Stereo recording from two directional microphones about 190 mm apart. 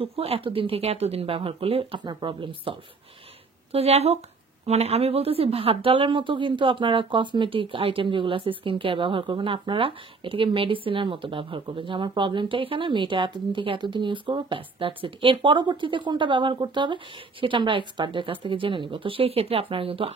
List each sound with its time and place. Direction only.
0.0 s a woman's voice: 30° right (ahead or behind)